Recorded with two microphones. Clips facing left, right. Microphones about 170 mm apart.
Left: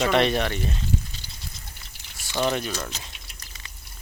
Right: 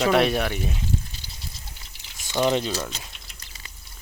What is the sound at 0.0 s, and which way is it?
Speech, 5° right (ahead or behind).